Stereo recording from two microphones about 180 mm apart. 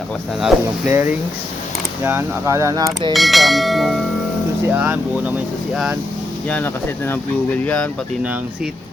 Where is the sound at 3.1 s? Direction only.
Centre (ahead or behind).